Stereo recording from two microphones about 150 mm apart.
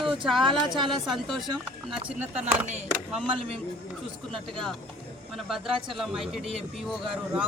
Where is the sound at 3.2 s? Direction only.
35° right (ahead or behind).